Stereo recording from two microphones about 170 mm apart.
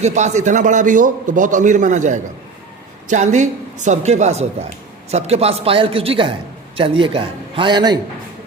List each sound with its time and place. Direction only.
0.0 s a man's voice: 40° right (ahead or behind); by 7.9 s 25° right (ahead or behind)